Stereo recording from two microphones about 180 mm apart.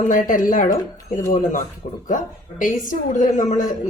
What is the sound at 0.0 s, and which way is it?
A woman's voice, 45° left (ahead or behind).